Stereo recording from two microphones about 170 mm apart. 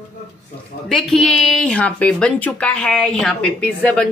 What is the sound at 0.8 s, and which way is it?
Speech, centre (ahead or behind).